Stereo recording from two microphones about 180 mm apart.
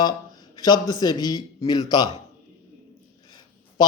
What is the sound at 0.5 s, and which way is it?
Speech, 20° left (ahead or behind).